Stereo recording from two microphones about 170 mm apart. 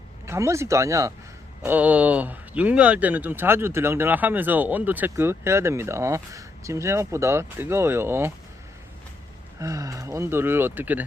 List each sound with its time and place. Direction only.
0.3 s speech: 15° right (ahead or behind)
9.6 s speech: 20° right (ahead or behind)